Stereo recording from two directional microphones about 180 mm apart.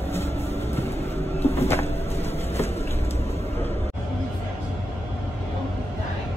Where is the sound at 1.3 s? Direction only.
35° left (ahead or behind).